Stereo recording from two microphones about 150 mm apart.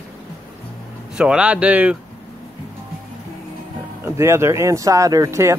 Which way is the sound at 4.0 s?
15° right (ahead or behind).